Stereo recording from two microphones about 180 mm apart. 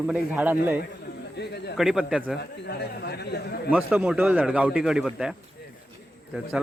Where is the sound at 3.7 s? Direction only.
5° right (ahead or behind).